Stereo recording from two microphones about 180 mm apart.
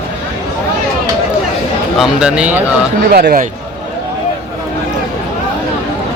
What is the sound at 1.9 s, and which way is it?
Speech, 5° right (ahead or behind).